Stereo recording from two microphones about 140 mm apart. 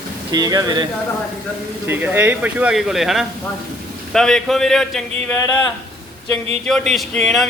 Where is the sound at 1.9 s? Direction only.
15° right (ahead or behind); by 5.0 s centre (ahead or behind).